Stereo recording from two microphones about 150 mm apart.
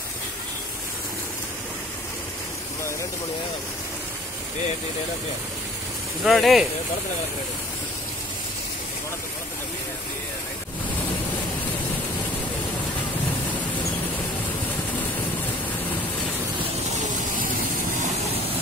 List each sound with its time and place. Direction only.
6.2 s speech: centre (ahead or behind)
17.0 s vehicle: 65° right (ahead or behind)